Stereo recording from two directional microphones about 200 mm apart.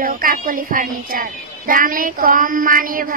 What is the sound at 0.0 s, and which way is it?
Child singing, 45° right (ahead or behind).